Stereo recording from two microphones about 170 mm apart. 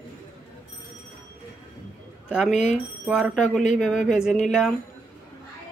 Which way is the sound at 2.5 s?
40° left (ahead or behind).